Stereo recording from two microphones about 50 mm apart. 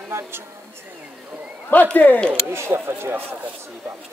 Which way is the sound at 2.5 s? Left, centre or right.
Right.